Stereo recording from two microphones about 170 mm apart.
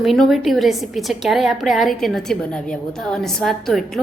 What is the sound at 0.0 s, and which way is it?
A woman's voice, centre (ahead or behind).